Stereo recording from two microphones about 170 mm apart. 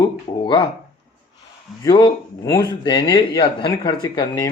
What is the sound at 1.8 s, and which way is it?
Speech, 20° left (ahead or behind).